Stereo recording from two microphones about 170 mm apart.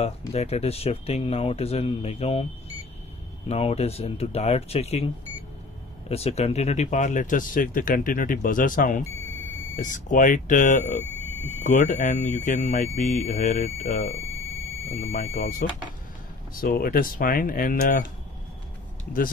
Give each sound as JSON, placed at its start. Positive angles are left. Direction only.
{"t": 0.3, "sound": "speech", "side_deg": 35}
{"t": 3.4, "sound": "speech", "side_deg": 35}
{"t": 15.1, "sound": "speech", "side_deg": 55}
{"t": 16.5, "sound": "speech", "side_deg": 60}